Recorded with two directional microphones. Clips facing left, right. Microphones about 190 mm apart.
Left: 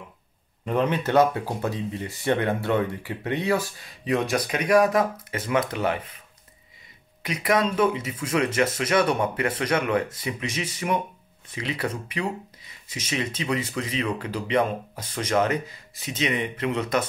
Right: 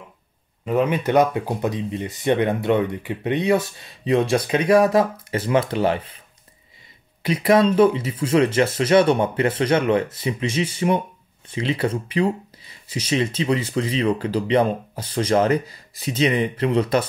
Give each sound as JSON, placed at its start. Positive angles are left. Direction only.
{"t": 0.7, "sound": "speech", "side_deg": -10}
{"t": 7.2, "sound": "speech", "side_deg": -30}